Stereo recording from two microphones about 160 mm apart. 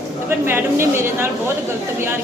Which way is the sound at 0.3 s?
15° right (ahead or behind).